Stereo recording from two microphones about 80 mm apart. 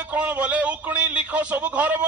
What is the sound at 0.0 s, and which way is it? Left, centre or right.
A man's voice, centre.